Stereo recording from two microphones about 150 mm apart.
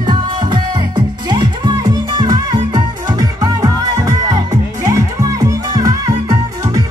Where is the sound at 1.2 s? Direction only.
30° right (ahead or behind).